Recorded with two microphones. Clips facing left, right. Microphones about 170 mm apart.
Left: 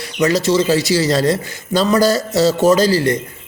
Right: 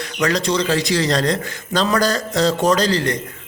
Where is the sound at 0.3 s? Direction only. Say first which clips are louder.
Left 4 dB; 5° left (ahead or behind).